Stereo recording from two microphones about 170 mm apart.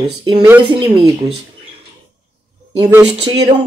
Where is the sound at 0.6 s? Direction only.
25° right (ahead or behind).